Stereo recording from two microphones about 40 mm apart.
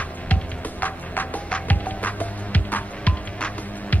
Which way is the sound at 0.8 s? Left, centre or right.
Left.